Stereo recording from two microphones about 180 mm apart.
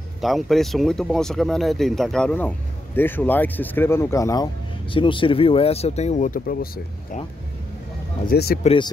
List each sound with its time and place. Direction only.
0.2 s speech: centre (ahead or behind); by 6.7 s 55° left (ahead or behind)
8.3 s speech: 60° left (ahead or behind)
8.6 s speech: 25° left (ahead or behind)